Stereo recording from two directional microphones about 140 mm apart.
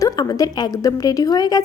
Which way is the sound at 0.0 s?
25° left (ahead or behind).